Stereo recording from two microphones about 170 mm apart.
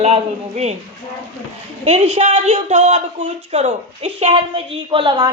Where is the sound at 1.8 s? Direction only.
40° right (ahead or behind).